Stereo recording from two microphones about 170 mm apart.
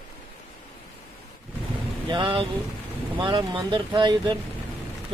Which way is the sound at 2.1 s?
30° right (ahead or behind).